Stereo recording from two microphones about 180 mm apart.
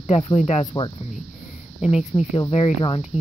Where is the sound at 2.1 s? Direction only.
15° left (ahead or behind).